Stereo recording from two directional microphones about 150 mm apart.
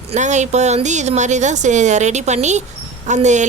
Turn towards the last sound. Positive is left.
turn(degrees=-50)  # may be behind; listen again after turning